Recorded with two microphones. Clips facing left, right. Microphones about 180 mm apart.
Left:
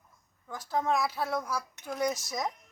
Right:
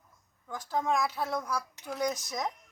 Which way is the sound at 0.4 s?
5° left (ahead or behind).